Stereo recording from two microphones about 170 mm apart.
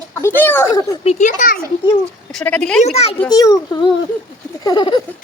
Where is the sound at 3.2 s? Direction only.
20° left (ahead or behind).